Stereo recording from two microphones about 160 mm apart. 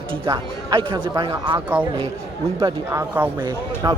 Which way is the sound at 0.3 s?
30° right (ahead or behind).